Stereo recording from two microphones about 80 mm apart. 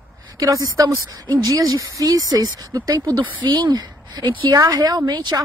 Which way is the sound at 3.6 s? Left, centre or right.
Right.